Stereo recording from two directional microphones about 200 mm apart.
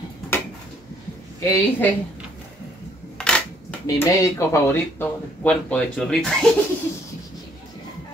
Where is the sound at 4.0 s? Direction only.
15° left (ahead or behind).